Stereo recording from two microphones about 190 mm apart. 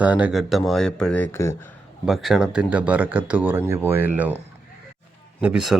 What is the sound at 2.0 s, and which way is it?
Speech, centre (ahead or behind).